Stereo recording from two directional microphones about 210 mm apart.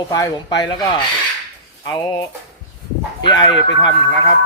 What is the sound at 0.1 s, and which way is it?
Speech, 20° left (ahead or behind).